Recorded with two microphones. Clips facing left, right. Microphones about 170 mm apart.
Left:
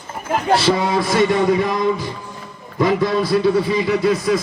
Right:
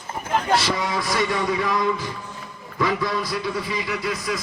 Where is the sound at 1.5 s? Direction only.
40° left (ahead or behind).